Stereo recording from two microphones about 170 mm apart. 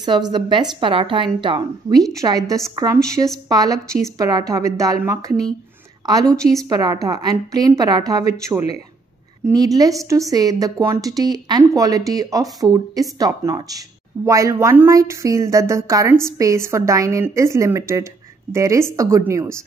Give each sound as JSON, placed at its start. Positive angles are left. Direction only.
{"t": 0.0, "sound": "a woman's voice", "side_deg": -25}
{"t": 6.3, "sound": "a woman's voice", "side_deg": 5}
{"t": 6.7, "sound": "speech", "side_deg": -20}